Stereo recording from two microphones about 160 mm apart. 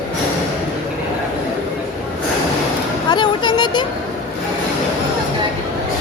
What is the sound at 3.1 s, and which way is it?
Vehicle, 30° left (ahead or behind).